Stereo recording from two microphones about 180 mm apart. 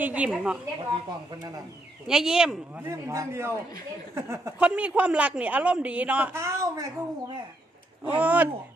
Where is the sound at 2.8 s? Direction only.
15° right (ahead or behind).